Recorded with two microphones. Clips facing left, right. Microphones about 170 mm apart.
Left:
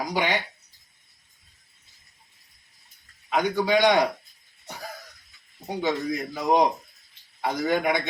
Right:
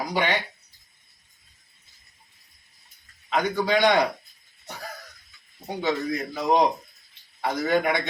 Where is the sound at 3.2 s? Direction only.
10° left (ahead or behind).